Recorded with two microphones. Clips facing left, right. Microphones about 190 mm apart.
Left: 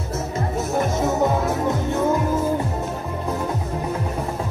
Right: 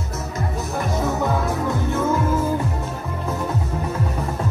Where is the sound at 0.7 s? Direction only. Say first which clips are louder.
Left 2 dB; 20° left (ahead or behind).